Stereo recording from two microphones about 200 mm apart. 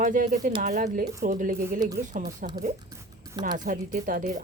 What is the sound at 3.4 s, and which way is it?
Speech, 40° right (ahead or behind).